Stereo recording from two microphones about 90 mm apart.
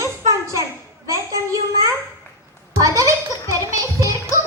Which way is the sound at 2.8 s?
35° right (ahead or behind).